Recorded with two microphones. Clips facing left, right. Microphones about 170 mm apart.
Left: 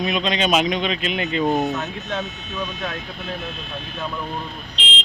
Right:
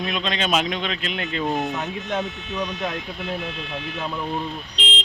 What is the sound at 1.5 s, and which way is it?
Speech, 25° left (ahead or behind).